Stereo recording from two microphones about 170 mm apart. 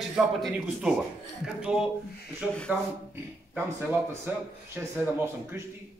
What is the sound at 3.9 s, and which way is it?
A man's voice, 10° right (ahead or behind).